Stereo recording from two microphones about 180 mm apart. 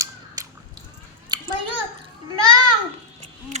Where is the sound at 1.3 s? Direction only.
25° right (ahead or behind).